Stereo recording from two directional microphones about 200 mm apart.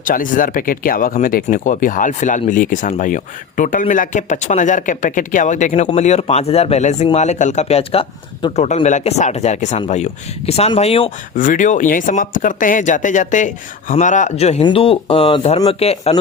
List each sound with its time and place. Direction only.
0.0 s speech: 40° left (ahead or behind)
11.3 s speech: 40° left (ahead or behind)